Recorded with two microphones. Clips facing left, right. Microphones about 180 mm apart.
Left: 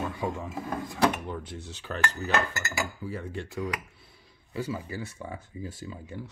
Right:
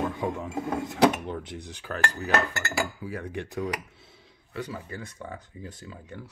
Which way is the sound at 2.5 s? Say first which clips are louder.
Right 3 dB; 65° right (ahead or behind).